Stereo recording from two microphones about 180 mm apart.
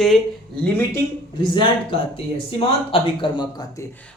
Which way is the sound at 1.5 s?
30° left (ahead or behind).